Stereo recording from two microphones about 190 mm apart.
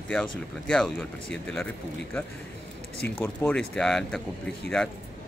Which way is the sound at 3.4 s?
5° left (ahead or behind).